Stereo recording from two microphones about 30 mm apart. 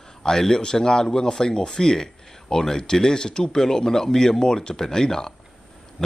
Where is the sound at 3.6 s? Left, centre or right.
Centre.